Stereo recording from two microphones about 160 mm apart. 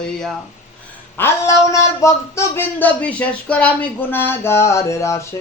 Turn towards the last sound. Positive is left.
turn(degrees=20)  # may be behind; listen again after turning